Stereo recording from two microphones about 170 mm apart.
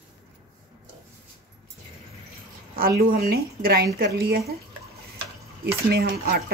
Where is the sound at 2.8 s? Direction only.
60° right (ahead or behind).